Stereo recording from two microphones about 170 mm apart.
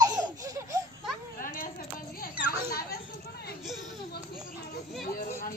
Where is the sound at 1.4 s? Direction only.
55° left (ahead or behind).